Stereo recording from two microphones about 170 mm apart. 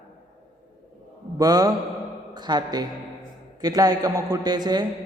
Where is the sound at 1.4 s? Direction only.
20° right (ahead or behind).